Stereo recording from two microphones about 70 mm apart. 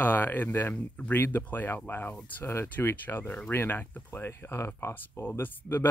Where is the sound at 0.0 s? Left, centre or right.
Left.